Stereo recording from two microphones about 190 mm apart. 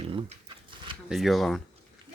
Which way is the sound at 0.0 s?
30° right (ahead or behind).